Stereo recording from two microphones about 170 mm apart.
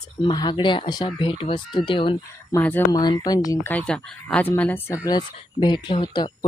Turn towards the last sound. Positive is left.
turn(degrees=25)  # may be behind; listen again after turning